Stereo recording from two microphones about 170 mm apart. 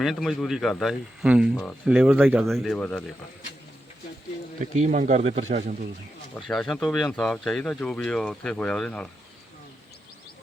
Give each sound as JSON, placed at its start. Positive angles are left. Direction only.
{"t": 0.0, "sound": "speech", "side_deg": 0}
{"t": 2.4, "sound": "speech", "side_deg": 0}
{"t": 4.7, "sound": "speech", "side_deg": -45}
{"t": 6.3, "sound": "speech", "side_deg": 5}